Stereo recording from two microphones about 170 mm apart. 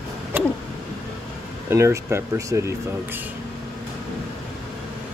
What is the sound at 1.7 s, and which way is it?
Speech, 15° right (ahead or behind).